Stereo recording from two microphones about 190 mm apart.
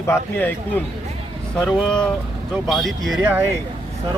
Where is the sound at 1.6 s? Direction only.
Centre (ahead or behind).